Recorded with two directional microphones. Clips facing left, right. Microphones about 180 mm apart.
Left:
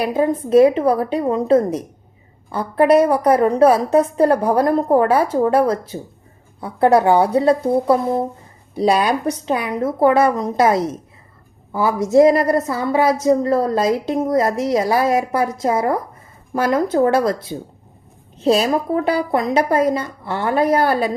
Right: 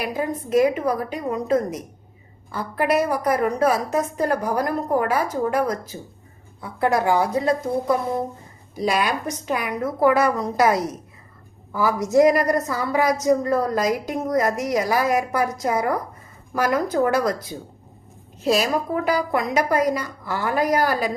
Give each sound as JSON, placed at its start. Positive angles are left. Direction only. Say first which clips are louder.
{"t": 0.0, "sound": "a woman's voice", "louder": "left 7 dB", "side_deg": 30}